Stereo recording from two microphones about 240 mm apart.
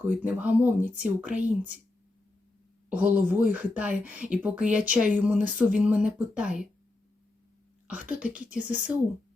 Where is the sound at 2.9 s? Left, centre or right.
Centre.